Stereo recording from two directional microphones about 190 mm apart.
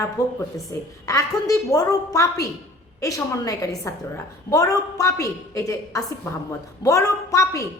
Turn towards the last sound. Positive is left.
turn(degrees=15)  # may be behind; listen again after turning